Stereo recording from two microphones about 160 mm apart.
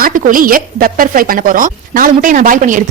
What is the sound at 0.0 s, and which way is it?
A woman's voice, 55° right (ahead or behind).